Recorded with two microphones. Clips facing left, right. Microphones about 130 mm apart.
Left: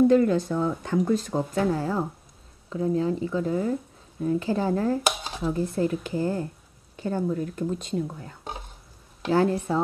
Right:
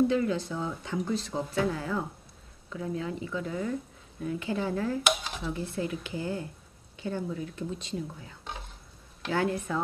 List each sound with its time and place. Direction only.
0.1 s speech: 45° left (ahead or behind)
9.2 s speech: 35° left (ahead or behind)